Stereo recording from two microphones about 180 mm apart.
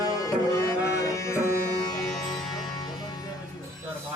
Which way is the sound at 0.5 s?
15° left (ahead or behind).